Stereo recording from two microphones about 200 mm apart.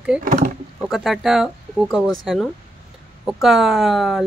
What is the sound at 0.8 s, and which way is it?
Speech, centre (ahead or behind).